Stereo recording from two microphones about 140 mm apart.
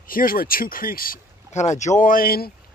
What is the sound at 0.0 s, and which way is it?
Speech, 90° left.